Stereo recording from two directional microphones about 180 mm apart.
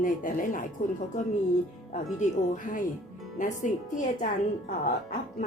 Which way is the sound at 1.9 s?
45° left (ahead or behind).